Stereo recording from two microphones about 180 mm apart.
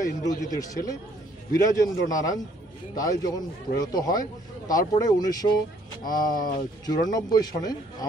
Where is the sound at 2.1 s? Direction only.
20° left (ahead or behind).